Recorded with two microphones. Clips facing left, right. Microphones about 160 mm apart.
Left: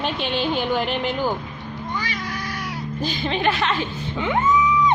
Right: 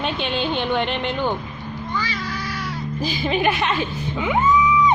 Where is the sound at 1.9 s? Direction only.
15° left (ahead or behind).